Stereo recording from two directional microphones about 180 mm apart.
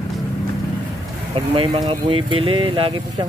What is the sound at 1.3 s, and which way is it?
Speech, 30° right (ahead or behind).